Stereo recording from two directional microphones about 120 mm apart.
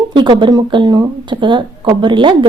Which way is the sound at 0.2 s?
40° right (ahead or behind).